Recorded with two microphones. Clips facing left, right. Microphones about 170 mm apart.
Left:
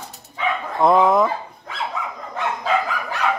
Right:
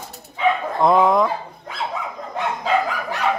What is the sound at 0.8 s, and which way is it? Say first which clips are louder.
Speech: left 1 dB; centre (ahead or behind).